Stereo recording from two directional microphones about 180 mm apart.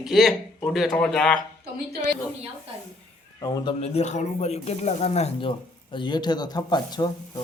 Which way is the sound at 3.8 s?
35° left (ahead or behind).